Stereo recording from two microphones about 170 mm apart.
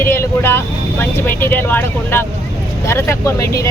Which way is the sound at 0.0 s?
15° left (ahead or behind).